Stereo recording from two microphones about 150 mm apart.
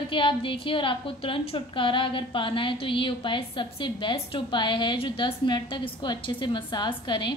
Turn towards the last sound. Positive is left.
turn(degrees=30)  # may be behind; listen again after turning